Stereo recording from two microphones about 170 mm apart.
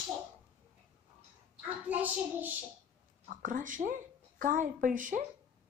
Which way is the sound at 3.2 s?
50° right (ahead or behind).